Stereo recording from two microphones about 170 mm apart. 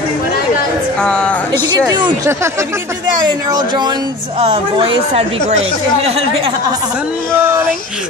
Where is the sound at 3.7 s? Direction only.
25° right (ahead or behind).